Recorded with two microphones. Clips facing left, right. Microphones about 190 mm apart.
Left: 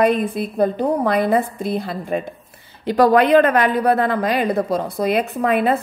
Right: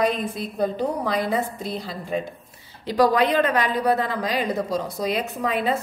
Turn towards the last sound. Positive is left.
turn(degrees=60)  # may be behind; listen again after turning